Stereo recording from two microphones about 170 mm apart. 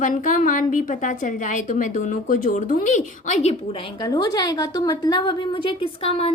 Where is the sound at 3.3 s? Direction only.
35° left (ahead or behind).